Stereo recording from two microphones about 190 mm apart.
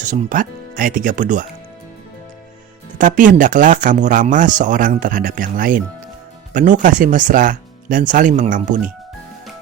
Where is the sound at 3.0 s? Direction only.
45° right (ahead or behind).